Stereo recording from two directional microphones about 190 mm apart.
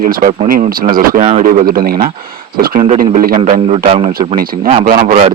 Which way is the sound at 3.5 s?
30° right (ahead or behind).